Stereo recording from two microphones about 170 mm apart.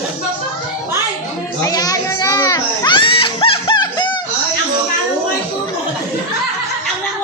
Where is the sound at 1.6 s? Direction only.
20° left (ahead or behind).